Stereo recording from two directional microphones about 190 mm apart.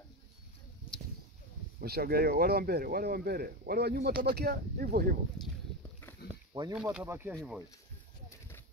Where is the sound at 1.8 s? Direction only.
55° right (ahead or behind).